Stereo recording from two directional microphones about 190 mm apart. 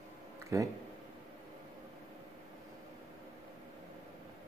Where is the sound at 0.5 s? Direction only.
15° right (ahead or behind).